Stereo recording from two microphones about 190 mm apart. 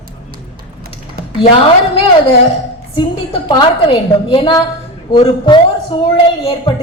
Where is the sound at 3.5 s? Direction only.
25° left (ahead or behind).